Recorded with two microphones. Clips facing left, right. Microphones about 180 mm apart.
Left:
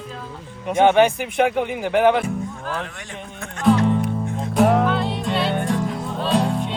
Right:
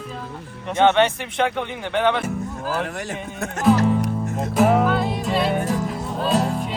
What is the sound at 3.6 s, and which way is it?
Music, 5° right (ahead or behind).